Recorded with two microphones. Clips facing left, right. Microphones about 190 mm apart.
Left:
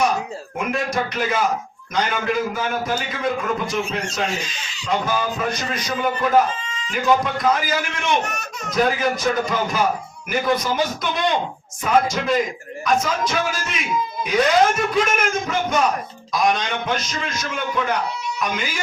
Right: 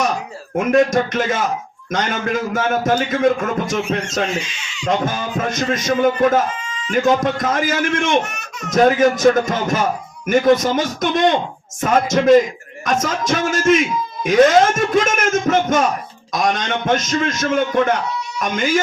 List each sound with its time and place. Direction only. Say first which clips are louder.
0.5 s a man's voice: right 9 dB; 45° right (ahead or behind)
4.4 s speech: right 2 dB; 35° left (ahead or behind)
4.9 s a man's voice: right 2 dB; 45° right (ahead or behind)